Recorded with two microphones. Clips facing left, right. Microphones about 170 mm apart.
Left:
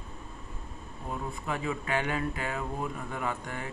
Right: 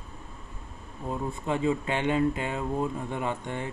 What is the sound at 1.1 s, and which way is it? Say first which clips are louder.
Speech: right 5 dB; 25° right (ahead or behind).